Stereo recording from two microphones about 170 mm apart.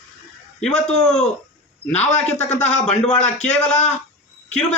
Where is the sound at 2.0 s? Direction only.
40° left (ahead or behind).